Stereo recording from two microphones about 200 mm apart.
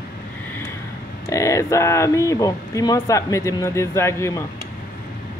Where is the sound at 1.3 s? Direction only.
15° left (ahead or behind).